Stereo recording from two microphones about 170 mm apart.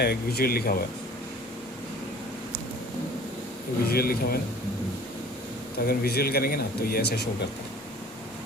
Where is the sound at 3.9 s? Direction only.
60° left (ahead or behind).